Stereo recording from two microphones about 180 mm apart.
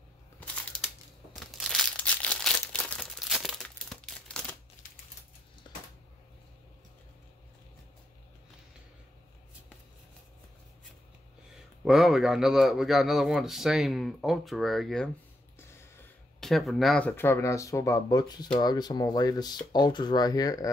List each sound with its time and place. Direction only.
1.3 s crumpling: centre (ahead or behind)
11.5 s a man's voice: centre (ahead or behind)
15.6 s a sound: 15° left (ahead or behind)
16.3 s speech: centre (ahead or behind); by 20.7 s 20° left (ahead or behind)